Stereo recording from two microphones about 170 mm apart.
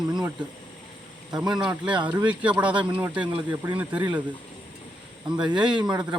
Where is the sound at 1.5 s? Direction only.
5° right (ahead or behind).